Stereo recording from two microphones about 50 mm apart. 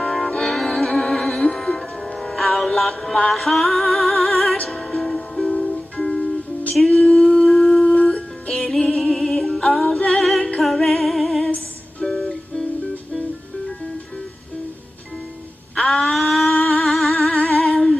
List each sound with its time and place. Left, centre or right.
0.0 s music: centre
6.8 s a sound: centre
7.8 s music: left
8.5 s music: centre
15.7 s a sound: centre
16.8 s music: centre
17.3 s humming: centre